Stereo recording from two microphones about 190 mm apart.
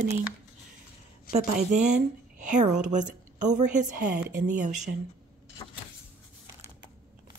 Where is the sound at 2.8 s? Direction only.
40° right (ahead or behind).